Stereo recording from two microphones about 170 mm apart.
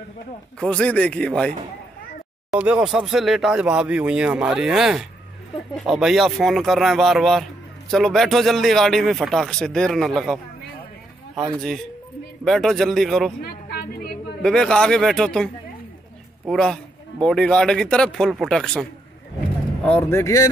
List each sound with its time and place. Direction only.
0.6 s speech: 5° left (ahead or behind)
2.5 s speech: 10° right (ahead or behind)
11.5 s speech: 5° left (ahead or behind)
13.4 s a sound: 65° left (ahead or behind)
14.4 s speech: 5° left (ahead or behind)